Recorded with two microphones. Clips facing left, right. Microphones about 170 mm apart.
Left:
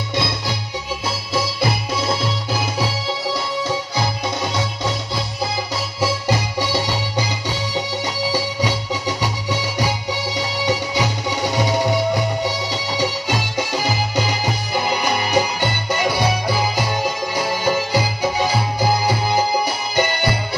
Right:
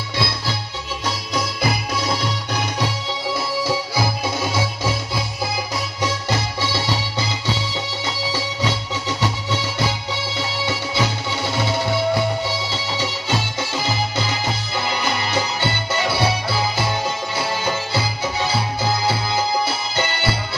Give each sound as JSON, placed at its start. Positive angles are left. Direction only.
{"t": 0.1, "sound": "music", "side_deg": 20}
{"t": 1.0, "sound": "music", "side_deg": 0}
{"t": 3.6, "sound": "music", "side_deg": -5}
{"t": 5.9, "sound": "music", "side_deg": 10}